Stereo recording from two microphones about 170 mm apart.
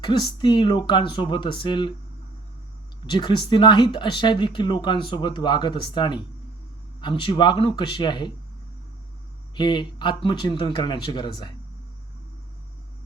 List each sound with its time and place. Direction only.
0.0 s speech: 25° left (ahead or behind)
3.1 s speech: 25° left (ahead or behind)
9.6 s speech: 25° left (ahead or behind)